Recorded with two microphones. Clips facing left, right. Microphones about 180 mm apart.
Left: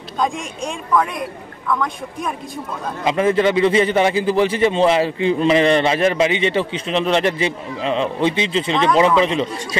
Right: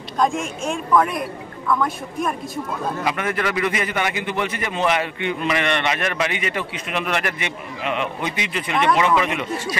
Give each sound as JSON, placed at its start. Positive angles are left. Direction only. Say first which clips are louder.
{"t": 0.2, "sound": "a woman's voice", "louder": "right 1 dB", "side_deg": 0}
{"t": 3.0, "sound": "a man's voice", "louder": "left 10 dB", "side_deg": 25}